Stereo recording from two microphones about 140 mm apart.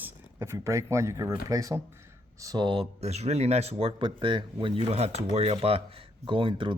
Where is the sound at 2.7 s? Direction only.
45° right (ahead or behind).